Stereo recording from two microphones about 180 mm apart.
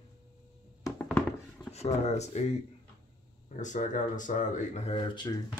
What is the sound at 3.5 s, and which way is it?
Speech, 40° left (ahead or behind).